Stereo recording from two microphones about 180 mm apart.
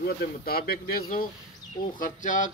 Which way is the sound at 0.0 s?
60° left (ahead or behind).